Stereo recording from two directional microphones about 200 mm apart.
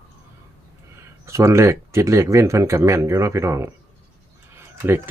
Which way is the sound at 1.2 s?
15° right (ahead or behind).